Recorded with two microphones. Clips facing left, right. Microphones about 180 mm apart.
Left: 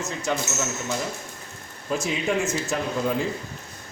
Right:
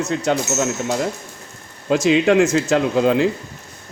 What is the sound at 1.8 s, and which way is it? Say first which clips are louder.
A man's voice: right 11 dB; 90° right.